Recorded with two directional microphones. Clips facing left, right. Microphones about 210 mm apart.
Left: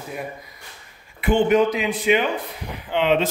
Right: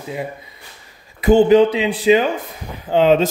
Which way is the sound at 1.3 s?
35° right (ahead or behind).